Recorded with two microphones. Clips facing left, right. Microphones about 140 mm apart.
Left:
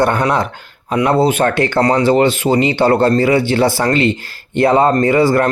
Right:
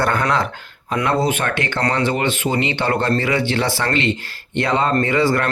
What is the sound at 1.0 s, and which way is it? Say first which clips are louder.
Speech: left 6 dB; 30° left (ahead or behind).